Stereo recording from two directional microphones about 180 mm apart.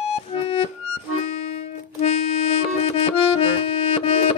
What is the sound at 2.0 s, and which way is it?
Music, 35° left (ahead or behind).